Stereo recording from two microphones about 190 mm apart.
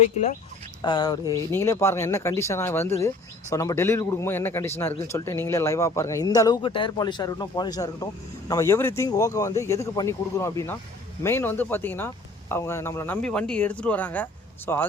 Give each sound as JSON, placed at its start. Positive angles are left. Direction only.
{"t": 0.8, "sound": "a man's voice", "side_deg": 20}